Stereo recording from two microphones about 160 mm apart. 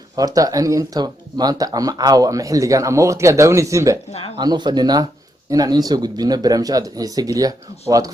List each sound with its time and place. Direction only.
0.2 s speech: 20° right (ahead or behind)